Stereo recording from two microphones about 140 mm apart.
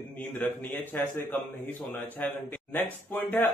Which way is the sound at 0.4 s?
15° left (ahead or behind).